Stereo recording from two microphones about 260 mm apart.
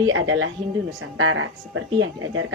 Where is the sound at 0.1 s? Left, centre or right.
Right.